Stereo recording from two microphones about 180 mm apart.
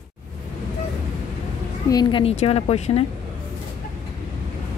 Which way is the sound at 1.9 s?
25° left (ahead or behind).